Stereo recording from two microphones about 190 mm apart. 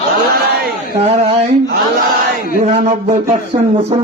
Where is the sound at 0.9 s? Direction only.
30° right (ahead or behind).